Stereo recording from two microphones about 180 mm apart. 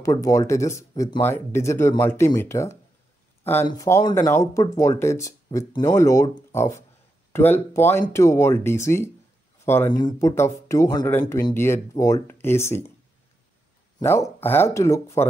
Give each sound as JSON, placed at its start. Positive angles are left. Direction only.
{"t": 0.0, "sound": "speech", "side_deg": 15}
{"t": 14.0, "sound": "speech", "side_deg": 15}